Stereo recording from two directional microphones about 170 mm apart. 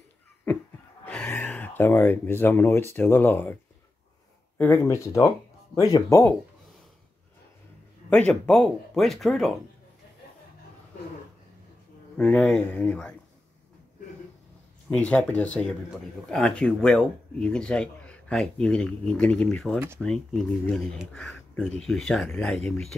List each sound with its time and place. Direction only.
1.0 s speech: 10° left (ahead or behind)
4.6 s speech: 15° left (ahead or behind)
8.1 s speech: 5° left (ahead or behind)
12.2 s speech: 5° left (ahead or behind)
14.9 s speech: 5° left (ahead or behind)